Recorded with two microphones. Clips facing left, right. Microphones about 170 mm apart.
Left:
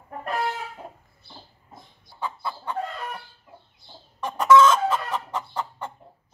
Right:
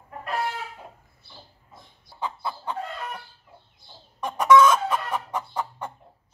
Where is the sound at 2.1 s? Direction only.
15° right (ahead or behind).